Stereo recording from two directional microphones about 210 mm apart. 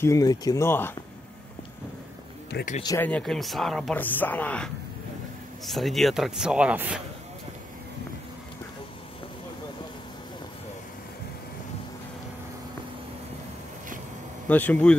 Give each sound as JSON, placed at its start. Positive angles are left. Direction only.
{"t": 0.0, "sound": "speech", "side_deg": 15}
{"t": 2.8, "sound": "speech", "side_deg": 15}
{"t": 3.1, "sound": "speech", "side_deg": 5}
{"t": 5.7, "sound": "speech", "side_deg": 0}
{"t": 14.5, "sound": "speech", "side_deg": 10}